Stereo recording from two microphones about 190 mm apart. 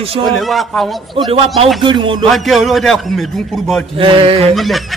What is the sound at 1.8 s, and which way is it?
Speech, 25° right (ahead or behind).